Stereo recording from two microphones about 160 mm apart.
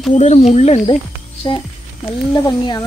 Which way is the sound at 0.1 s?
45° left (ahead or behind).